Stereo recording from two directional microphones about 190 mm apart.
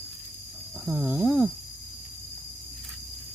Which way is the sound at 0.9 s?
10° right (ahead or behind).